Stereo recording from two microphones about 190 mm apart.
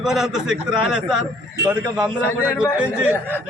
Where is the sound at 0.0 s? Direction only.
5° right (ahead or behind).